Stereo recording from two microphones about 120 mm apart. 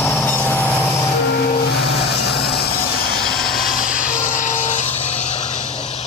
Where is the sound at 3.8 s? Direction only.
90° left.